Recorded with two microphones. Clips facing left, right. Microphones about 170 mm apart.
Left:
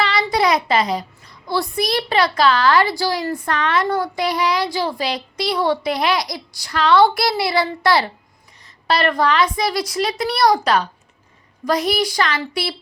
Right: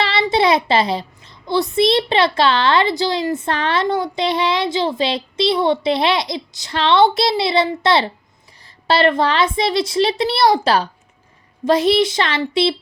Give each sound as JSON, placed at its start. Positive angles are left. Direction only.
{"t": 0.0, "sound": "a child's voice", "side_deg": -25}